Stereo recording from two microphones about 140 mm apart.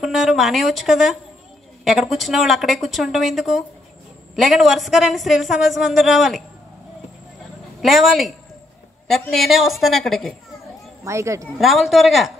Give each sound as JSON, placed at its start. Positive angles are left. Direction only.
{"t": 0.0, "sound": "a woman's voice", "side_deg": 0}
{"t": 7.8, "sound": "a woman's voice", "side_deg": 0}
{"t": 9.3, "sound": "a woman's voice", "side_deg": 0}
{"t": 11.1, "sound": "speech", "side_deg": -20}
{"t": 11.5, "sound": "a woman's voice", "side_deg": 0}